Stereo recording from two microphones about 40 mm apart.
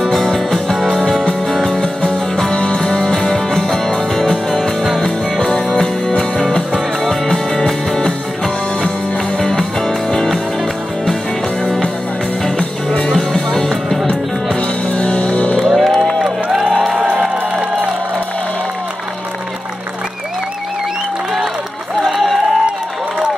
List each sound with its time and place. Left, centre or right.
0.2 s music: centre
1.8 s music: centre
5.8 s music: left
7.1 s music: centre
9.4 s music: centre
13.1 s music: centre
14.9 s music: left
15.6 s music: centre
16.4 s music: centre